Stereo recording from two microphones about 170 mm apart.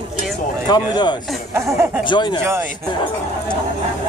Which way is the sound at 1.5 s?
15° right (ahead or behind).